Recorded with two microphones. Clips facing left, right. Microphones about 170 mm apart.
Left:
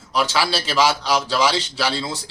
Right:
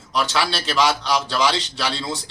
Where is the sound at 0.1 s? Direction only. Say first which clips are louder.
Left 1 dB; centre (ahead or behind).